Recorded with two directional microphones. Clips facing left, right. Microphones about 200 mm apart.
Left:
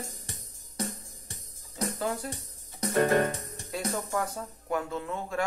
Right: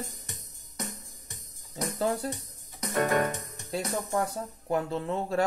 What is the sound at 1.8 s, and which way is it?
Music, 30° right (ahead or behind).